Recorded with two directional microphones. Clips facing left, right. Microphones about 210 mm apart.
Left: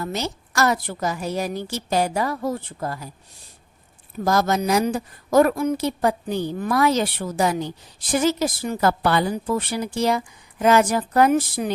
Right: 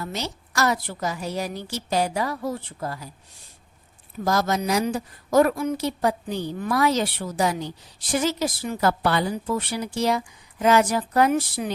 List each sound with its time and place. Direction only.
0.0 s a woman's voice: 50° left (ahead or behind)
4.2 s a woman's voice: 50° left (ahead or behind)